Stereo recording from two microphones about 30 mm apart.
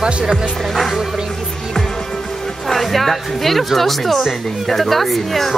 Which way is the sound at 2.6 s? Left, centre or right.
Centre.